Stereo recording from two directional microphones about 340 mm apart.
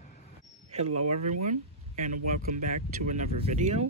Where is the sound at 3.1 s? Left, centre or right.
Right.